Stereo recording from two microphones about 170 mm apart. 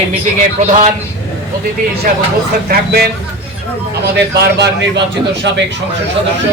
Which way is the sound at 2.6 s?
65° right (ahead or behind).